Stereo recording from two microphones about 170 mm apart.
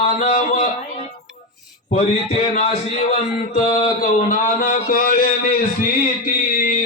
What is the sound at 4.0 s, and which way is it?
A man's voice, 55° left (ahead or behind).